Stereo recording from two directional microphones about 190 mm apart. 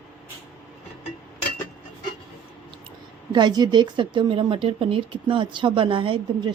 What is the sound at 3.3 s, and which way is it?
A woman's voice, 20° right (ahead or behind).